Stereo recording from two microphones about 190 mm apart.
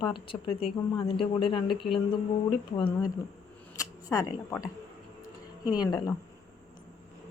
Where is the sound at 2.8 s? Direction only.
25° left (ahead or behind).